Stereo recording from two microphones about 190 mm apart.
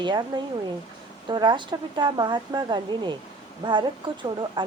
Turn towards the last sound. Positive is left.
turn(degrees=-25)  # may be behind; listen again after turning